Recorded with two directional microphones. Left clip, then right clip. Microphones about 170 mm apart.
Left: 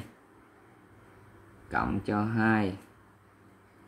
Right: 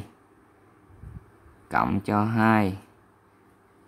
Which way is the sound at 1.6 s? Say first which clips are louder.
Right 6 dB; 45° right (ahead or behind).